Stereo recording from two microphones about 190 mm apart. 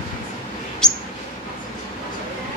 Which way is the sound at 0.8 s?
5° left (ahead or behind).